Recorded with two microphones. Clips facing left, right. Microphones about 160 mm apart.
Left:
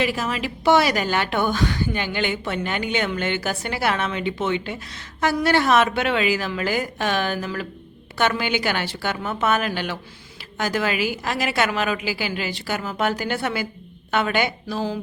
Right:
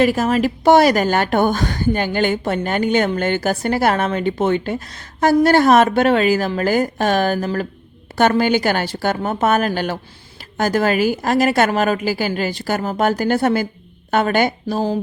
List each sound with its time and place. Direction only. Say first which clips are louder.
0.0 s a woman's voice: right 8 dB; 45° right (ahead or behind)